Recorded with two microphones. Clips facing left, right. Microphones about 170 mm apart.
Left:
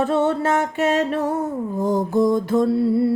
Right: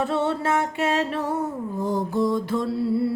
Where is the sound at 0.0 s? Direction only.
45° left (ahead or behind).